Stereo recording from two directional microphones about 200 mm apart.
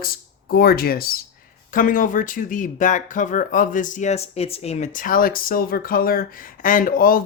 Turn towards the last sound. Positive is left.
turn(degrees=45)  # may be behind; listen again after turning